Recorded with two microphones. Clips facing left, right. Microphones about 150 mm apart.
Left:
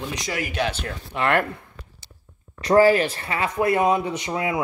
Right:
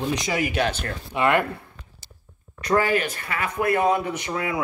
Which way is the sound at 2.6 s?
35° left (ahead or behind).